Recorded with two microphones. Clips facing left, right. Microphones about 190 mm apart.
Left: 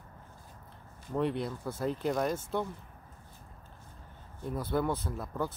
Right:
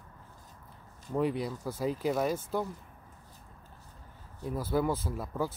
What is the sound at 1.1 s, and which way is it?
Speech, 5° right (ahead or behind).